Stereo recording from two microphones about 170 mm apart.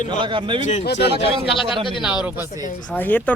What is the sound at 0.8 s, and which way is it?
Speech, 75° left (ahead or behind).